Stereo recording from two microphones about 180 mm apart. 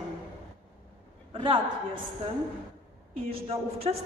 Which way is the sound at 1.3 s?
30° right (ahead or behind).